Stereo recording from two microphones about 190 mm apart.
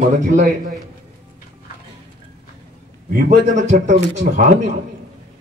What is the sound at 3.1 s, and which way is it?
A man's voice, 40° right (ahead or behind).